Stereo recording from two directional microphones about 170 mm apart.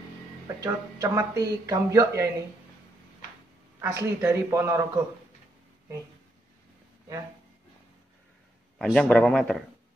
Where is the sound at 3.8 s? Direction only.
15° right (ahead or behind).